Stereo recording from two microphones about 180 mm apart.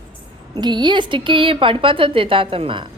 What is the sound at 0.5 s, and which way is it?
A woman's voice, 25° right (ahead or behind).